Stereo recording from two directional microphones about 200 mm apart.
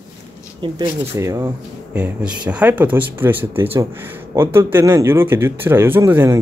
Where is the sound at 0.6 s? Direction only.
20° right (ahead or behind).